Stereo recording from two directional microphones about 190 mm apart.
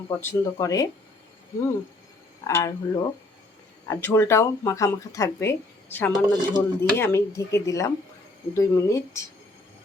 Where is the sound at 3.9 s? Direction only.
10° left (ahead or behind).